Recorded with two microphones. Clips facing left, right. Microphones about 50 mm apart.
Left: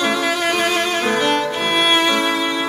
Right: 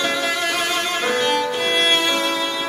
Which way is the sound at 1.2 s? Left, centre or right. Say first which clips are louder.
Left 2 dB; centre.